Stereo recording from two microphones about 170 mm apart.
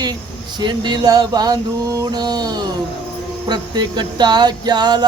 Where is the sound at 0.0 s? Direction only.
25° right (ahead or behind).